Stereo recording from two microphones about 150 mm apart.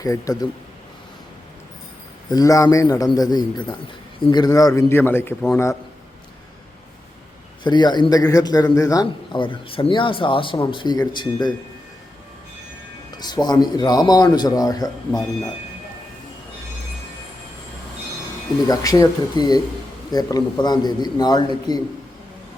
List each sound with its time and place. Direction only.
0.0 s a man's voice: 20° left (ahead or behind)
2.3 s a man's voice: 25° left (ahead or behind)
7.6 s a man's voice: 30° left (ahead or behind)
13.1 s a man's voice: 30° left (ahead or behind)
18.7 s a man's voice: 25° left (ahead or behind)